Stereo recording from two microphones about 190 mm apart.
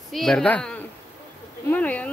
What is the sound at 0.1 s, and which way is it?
Speech, 5° left (ahead or behind).